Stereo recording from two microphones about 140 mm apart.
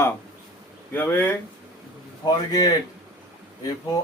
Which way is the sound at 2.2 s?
25° left (ahead or behind).